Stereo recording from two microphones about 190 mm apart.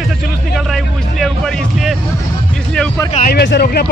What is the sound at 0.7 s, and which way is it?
Music, centre (ahead or behind).